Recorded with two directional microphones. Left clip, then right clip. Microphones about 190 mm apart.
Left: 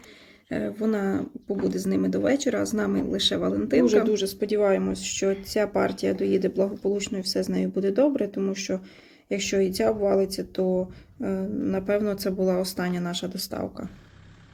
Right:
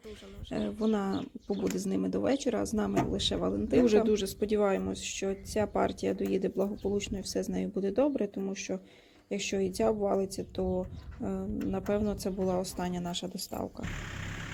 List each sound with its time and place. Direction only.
0.5 s speech: 35° right (ahead or behind)